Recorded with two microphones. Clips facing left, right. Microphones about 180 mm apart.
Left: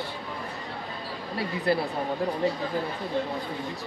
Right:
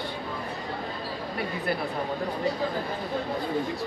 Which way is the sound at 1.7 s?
30° left (ahead or behind).